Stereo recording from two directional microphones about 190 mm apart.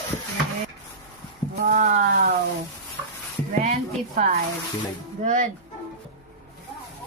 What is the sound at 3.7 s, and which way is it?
A woman's voice, 40° right (ahead or behind).